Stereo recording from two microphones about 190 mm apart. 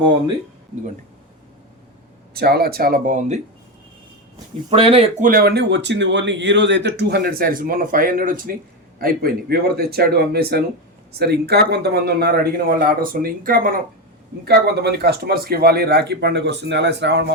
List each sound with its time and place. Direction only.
2.3 s speech: 55° right (ahead or behind); by 3.4 s 40° right (ahead or behind)
4.7 s speech: 30° right (ahead or behind)
5.2 s speech: 50° right (ahead or behind)
14.4 s speech: 60° right (ahead or behind)